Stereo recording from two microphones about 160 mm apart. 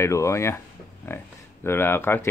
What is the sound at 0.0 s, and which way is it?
Speech, 20° left (ahead or behind).